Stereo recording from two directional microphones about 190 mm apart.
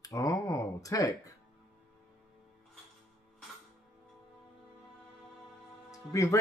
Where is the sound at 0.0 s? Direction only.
15° left (ahead or behind).